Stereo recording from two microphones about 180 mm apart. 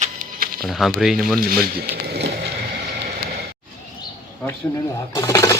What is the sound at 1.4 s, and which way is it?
Speech, 55° right (ahead or behind).